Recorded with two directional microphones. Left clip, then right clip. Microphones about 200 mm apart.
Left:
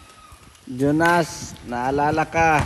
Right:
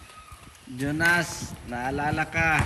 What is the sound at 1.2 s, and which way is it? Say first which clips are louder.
Speech: left 6 dB; 15° left (ahead or behind).